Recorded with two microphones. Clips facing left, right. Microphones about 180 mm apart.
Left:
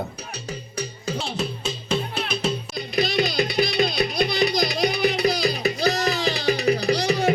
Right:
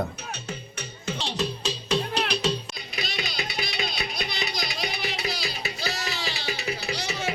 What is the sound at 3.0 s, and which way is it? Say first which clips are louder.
Music: left 12 dB; 50° left (ahead or behind).